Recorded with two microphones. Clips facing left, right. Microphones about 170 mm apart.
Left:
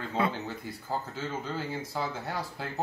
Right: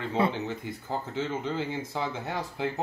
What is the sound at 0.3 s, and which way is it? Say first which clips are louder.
Speech: right 3 dB; 20° right (ahead or behind).